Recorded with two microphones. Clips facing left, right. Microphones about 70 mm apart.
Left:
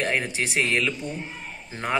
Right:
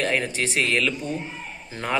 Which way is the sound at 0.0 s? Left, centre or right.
Centre.